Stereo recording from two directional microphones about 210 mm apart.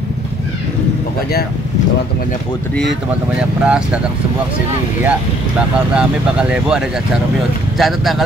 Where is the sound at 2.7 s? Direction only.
Centre (ahead or behind).